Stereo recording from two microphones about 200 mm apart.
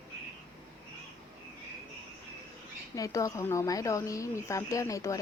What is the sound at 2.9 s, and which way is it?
A woman's voice, 15° left (ahead or behind).